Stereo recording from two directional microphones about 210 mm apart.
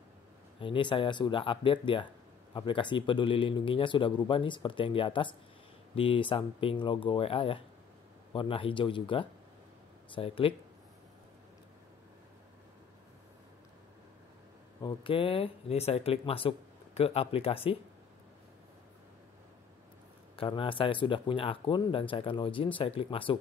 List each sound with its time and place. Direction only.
0.6 s speech: 25° left (ahead or behind)
14.8 s speech: 20° left (ahead or behind)
20.3 s speech: 25° left (ahead or behind)